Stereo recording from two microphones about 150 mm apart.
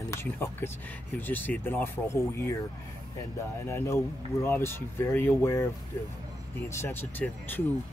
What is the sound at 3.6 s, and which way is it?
Speech, 20° left (ahead or behind).